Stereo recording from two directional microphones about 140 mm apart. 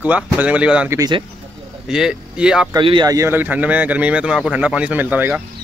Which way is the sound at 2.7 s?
35° right (ahead or behind).